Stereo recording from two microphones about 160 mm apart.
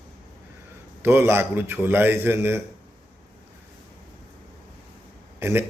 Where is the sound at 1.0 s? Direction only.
15° right (ahead or behind).